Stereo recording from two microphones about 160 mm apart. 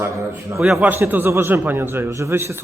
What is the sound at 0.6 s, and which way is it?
A man's voice, 5° right (ahead or behind).